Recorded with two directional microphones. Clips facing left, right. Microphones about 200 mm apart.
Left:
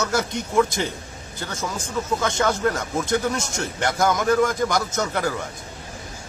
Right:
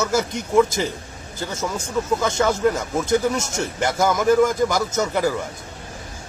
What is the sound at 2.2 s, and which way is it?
Speech, 5° right (ahead or behind).